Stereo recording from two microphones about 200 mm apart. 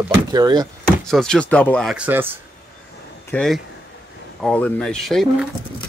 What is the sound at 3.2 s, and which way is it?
Speech, 5° left (ahead or behind).